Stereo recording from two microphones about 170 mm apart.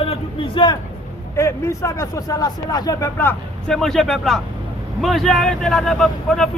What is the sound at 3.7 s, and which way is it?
Speech, 5° left (ahead or behind).